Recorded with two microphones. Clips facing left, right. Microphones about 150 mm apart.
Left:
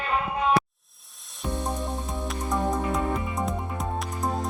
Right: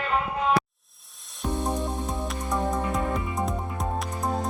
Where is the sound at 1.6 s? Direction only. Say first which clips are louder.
Right 2 dB; 20° right (ahead or behind).